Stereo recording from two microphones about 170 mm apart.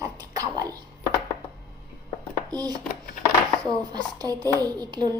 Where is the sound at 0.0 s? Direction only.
20° right (ahead or behind).